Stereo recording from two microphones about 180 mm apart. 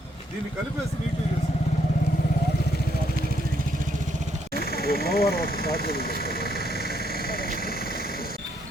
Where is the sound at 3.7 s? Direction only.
45° right (ahead or behind).